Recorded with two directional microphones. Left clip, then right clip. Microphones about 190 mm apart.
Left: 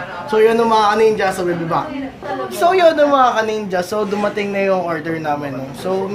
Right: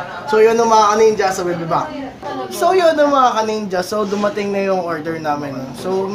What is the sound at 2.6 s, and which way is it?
Speech, 10° left (ahead or behind).